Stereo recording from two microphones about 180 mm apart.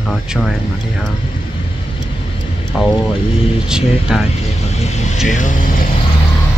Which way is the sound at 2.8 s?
5° right (ahead or behind).